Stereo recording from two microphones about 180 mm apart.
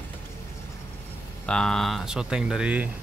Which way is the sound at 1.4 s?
5° left (ahead or behind).